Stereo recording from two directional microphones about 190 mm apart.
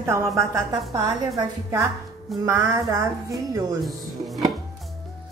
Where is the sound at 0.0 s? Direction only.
15° right (ahead or behind).